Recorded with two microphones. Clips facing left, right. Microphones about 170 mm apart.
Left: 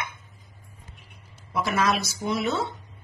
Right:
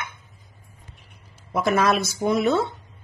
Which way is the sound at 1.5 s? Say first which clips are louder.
Right 4 dB; 50° right (ahead or behind).